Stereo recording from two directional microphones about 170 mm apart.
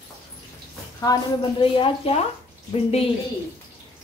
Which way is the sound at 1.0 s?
25° left (ahead or behind).